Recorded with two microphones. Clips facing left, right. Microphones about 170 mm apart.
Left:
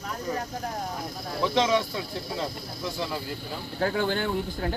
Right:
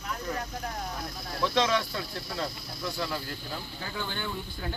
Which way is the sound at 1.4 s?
20° left (ahead or behind).